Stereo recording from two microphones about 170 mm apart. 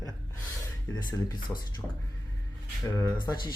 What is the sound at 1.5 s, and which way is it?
Speech, 15° left (ahead or behind).